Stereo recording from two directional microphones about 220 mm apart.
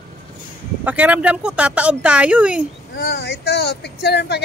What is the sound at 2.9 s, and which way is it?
Speech, 50° left (ahead or behind).